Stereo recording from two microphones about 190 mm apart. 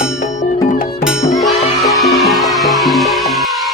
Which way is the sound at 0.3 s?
45° left (ahead or behind).